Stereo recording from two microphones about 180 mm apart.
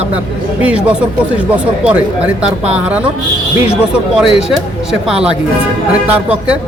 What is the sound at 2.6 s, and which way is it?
Speech, 5° right (ahead or behind).